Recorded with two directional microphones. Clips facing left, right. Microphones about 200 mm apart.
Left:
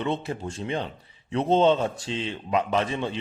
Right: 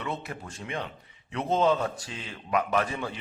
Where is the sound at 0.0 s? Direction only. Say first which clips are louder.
Left 7 dB; 25° left (ahead or behind).